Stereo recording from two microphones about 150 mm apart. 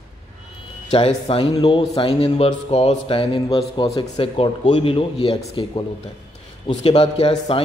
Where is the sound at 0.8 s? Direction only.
45° left (ahead or behind).